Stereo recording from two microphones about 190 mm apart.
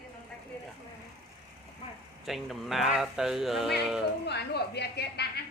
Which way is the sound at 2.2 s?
Centre (ahead or behind).